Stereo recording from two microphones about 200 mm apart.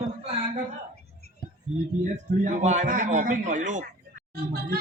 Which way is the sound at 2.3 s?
40° right (ahead or behind).